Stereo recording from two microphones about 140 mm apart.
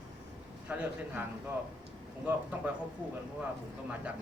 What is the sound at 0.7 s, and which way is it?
Speech, 10° right (ahead or behind).